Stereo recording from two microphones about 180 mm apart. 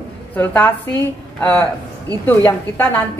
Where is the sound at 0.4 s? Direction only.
10° left (ahead or behind).